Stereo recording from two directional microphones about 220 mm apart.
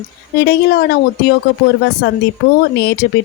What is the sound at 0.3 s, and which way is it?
A woman's voice, 45° left (ahead or behind).